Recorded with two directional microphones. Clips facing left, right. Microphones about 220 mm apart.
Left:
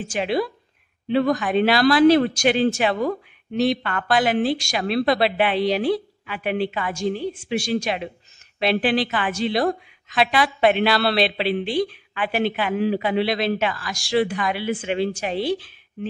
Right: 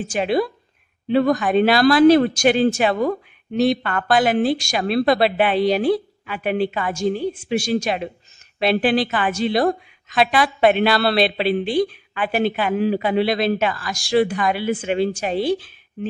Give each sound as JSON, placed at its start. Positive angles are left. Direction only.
{"t": 0.1, "sound": "a woman's voice", "side_deg": -45}